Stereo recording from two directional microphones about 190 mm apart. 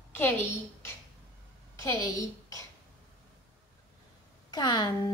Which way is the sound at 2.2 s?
15° left (ahead or behind).